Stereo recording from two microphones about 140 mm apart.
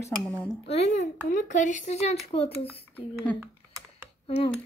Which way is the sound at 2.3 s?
45° left (ahead or behind).